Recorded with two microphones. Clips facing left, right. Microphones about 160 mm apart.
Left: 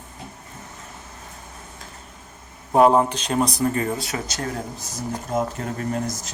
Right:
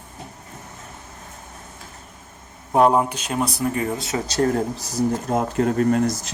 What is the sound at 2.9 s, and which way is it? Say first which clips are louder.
Speech: left 1 dB; 10° right (ahead or behind).